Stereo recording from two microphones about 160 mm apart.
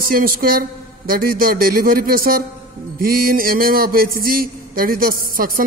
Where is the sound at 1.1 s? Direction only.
65° right (ahead or behind).